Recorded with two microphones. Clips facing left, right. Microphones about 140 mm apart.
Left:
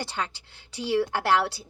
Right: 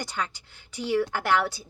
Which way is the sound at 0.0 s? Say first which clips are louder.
Even; 30° left (ahead or behind).